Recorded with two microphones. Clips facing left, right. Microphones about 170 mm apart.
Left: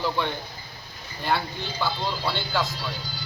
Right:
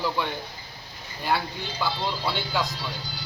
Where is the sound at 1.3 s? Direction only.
10° right (ahead or behind).